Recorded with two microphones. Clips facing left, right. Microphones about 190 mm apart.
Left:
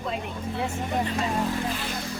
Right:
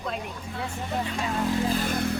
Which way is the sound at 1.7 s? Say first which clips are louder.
Right 6 dB; 50° right (ahead or behind).